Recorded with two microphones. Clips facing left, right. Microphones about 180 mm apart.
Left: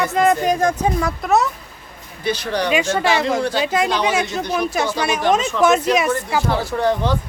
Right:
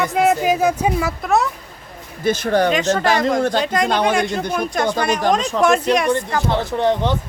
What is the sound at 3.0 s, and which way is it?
Speech, 45° right (ahead or behind).